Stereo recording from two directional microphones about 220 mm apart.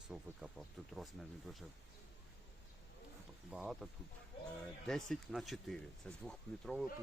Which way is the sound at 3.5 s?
5° right (ahead or behind).